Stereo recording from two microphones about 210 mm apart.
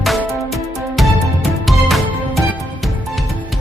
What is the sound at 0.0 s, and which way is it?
Music, centre (ahead or behind).